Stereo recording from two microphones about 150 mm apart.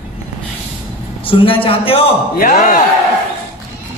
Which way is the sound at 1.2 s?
35° left (ahead or behind).